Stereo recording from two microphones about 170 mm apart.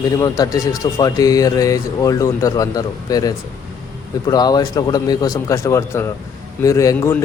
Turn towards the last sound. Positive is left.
turn(degrees=15)  # may be behind; listen again after turning